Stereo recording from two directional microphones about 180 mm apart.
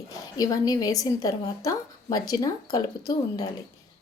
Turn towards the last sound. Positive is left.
turn(degrees=20)  # may be behind; listen again after turning